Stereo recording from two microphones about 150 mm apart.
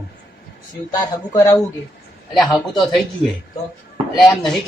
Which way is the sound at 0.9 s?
25° left (ahead or behind).